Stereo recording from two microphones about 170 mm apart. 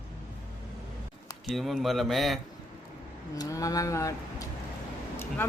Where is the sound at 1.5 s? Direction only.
Centre (ahead or behind).